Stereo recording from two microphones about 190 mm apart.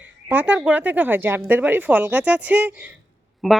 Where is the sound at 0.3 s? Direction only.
10° right (ahead or behind).